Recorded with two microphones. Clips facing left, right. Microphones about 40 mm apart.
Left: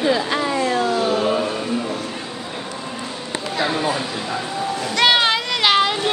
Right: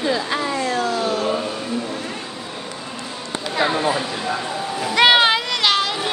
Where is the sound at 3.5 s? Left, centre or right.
Centre.